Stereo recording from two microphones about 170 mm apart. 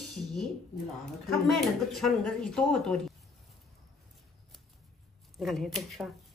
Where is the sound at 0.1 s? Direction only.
Centre (ahead or behind).